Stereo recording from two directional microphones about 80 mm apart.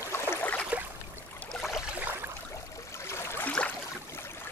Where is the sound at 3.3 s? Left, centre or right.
Centre.